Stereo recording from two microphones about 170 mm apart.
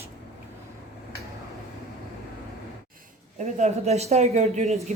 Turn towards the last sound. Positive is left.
turn(degrees=-40)  # may be behind; listen again after turning